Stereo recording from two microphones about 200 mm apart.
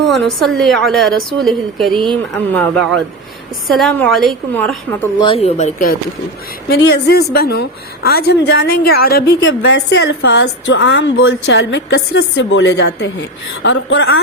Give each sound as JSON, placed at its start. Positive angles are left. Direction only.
{"t": 0.0, "sound": "a woman's voice", "side_deg": 0}
{"t": 5.2, "sound": "speech", "side_deg": 30}
{"t": 6.7, "sound": "a woman's voice", "side_deg": 55}
{"t": 9.4, "sound": "a woman's voice", "side_deg": 70}